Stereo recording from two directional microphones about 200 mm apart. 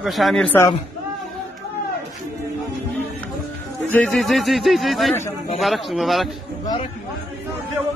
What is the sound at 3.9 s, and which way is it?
Speech, 5° left (ahead or behind).